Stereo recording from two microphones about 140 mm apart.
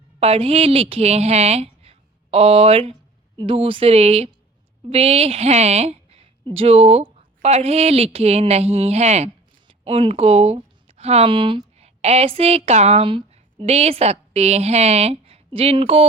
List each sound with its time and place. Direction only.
0.2 s a woman's voice: 45° right (ahead or behind)
13.1 s a woman's voice: 40° right (ahead or behind)